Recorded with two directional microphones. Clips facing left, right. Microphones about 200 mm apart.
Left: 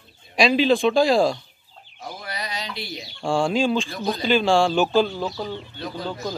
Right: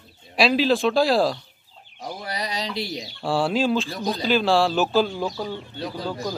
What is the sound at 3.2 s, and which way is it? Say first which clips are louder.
Speech: left 1 dB; 5° right (ahead or behind).